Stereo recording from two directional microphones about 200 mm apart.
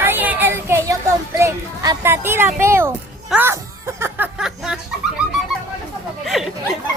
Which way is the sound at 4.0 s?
10° right (ahead or behind).